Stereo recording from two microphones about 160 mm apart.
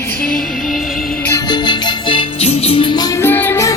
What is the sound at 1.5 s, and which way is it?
Music, 25° left (ahead or behind).